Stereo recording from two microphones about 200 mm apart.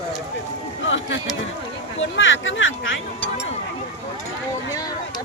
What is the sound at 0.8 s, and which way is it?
Speech, 70° left (ahead or behind).